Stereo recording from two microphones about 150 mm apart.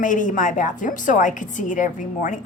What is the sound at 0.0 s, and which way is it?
A woman's voice, 60° left (ahead or behind).